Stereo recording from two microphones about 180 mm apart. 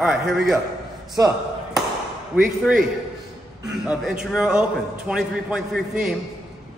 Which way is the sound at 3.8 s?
5° right (ahead or behind).